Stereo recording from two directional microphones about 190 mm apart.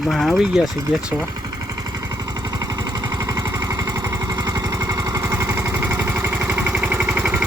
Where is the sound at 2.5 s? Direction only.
20° right (ahead or behind).